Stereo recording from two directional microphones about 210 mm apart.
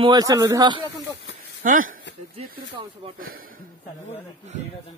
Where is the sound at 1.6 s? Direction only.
40° right (ahead or behind).